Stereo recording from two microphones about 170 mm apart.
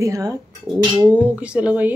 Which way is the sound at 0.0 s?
20° right (ahead or behind).